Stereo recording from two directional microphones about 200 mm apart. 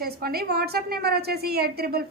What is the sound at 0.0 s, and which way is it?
A woman's voice, 50° right (ahead or behind).